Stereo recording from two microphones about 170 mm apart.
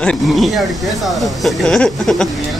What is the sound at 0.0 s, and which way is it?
Speech, centre (ahead or behind).